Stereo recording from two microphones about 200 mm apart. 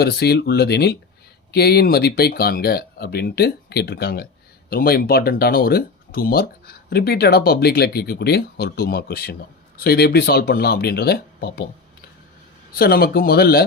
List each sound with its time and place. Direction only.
0.0 s speech: 55° left (ahead or behind)
12.7 s speech: 50° left (ahead or behind)